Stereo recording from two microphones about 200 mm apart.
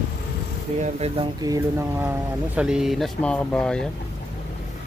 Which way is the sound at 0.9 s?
30° right (ahead or behind).